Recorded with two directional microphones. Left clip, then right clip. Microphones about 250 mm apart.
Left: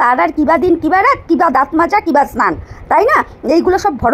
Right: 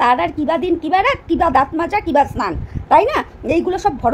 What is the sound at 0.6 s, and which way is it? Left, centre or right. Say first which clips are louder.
Speech: left 6 dB; centre.